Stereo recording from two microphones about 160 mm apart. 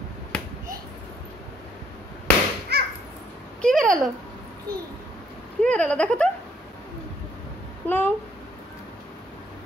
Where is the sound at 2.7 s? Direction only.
90° right.